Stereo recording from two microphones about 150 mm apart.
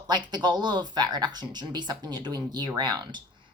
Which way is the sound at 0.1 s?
30° right (ahead or behind).